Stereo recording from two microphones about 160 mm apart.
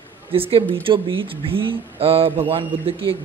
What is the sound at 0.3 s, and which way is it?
Speech, 35° right (ahead or behind).